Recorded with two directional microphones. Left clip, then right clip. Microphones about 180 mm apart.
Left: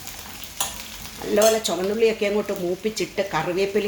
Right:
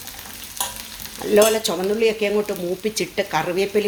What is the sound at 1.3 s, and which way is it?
Stir, 30° right (ahead or behind).